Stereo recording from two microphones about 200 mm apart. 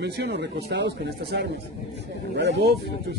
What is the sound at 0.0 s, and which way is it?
Speech, 55° right (ahead or behind).